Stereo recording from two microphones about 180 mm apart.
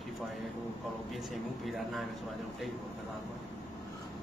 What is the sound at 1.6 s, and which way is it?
Speech, centre (ahead or behind).